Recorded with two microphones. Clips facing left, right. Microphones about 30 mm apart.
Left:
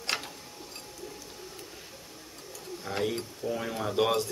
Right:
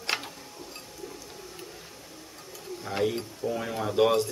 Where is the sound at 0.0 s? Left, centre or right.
Centre.